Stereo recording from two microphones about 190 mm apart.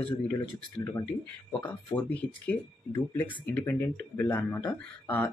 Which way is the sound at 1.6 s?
10° left (ahead or behind).